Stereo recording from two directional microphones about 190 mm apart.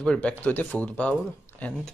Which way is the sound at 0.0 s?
5° left (ahead or behind).